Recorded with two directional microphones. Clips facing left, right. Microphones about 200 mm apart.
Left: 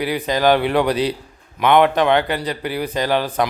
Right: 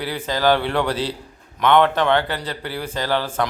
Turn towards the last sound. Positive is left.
turn(degrees=15)  # may be behind; listen again after turning